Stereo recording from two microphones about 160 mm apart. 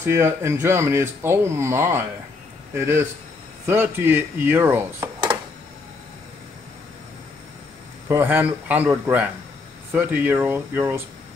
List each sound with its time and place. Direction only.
0.0 s speech: 15° right (ahead or behind)
8.1 s speech: 10° right (ahead or behind)